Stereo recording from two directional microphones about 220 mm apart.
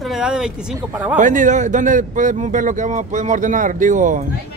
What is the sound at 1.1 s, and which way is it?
Speech, 35° right (ahead or behind).